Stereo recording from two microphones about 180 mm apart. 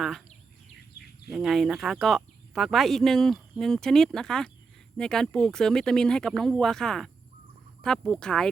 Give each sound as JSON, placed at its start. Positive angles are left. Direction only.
{"t": 0.9, "sound": "bird", "side_deg": 60}
{"t": 1.3, "sound": "speech", "side_deg": 0}